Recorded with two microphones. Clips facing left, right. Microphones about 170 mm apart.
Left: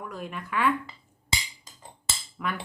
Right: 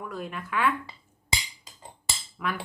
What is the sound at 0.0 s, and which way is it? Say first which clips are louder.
Speech: right 1 dB; centre (ahead or behind).